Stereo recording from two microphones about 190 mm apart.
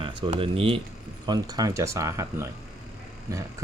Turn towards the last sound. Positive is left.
turn(degrees=-15)  # may be behind; listen again after turning